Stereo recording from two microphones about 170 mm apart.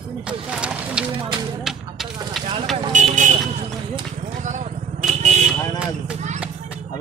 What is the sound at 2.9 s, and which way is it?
Vehicle, 45° right (ahead or behind).